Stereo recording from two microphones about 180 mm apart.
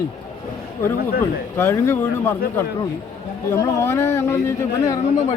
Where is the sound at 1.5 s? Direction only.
15° left (ahead or behind).